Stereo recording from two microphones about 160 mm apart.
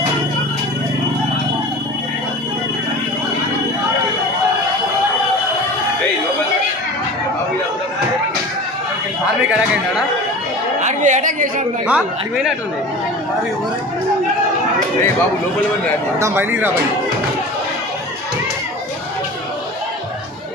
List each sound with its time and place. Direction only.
10.8 s a sound: 50° right (ahead or behind)
11.9 s a woman's voice: 5° right (ahead or behind)
16.2 s speech: 15° right (ahead or behind)